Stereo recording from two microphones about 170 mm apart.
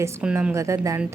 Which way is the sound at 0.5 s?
15° right (ahead or behind).